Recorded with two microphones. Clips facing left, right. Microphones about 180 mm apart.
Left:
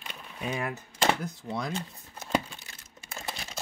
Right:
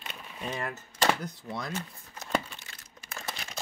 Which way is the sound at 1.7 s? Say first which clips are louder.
Left 2 dB; 30° left (ahead or behind).